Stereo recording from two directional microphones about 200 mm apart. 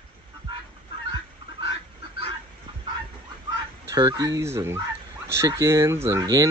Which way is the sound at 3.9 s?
20° right (ahead or behind).